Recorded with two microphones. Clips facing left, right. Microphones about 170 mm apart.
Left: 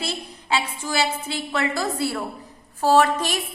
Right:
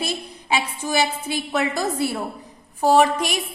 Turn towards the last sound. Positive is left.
turn(degrees=-10)  # may be behind; listen again after turning